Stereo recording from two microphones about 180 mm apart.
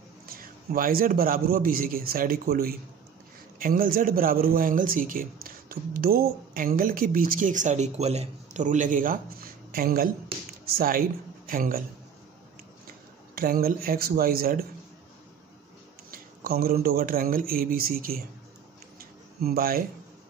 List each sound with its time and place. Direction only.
0.3 s a man's voice: 55° right (ahead or behind)
12.8 s speech: 55° right (ahead or behind)
16.1 s speech: 55° right (ahead or behind)
19.4 s speech: 55° right (ahead or behind)